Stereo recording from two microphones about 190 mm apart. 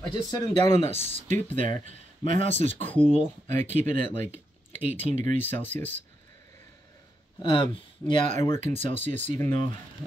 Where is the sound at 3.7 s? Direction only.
40° right (ahead or behind).